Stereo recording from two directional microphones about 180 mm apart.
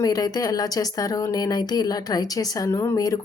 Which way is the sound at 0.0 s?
20° left (ahead or behind).